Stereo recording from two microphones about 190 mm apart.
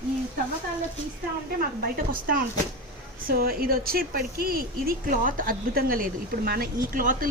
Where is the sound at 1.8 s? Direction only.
50° right (ahead or behind).